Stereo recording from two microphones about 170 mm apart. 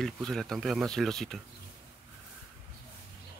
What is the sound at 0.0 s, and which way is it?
Speech, centre (ahead or behind).